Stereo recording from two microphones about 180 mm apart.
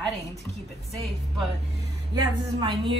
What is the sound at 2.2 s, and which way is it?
Speech, 25° right (ahead or behind).